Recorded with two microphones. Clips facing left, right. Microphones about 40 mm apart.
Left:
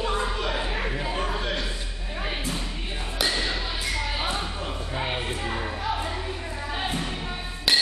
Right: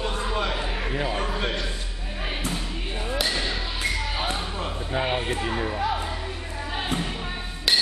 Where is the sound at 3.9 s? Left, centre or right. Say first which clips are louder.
Right 3 dB; right.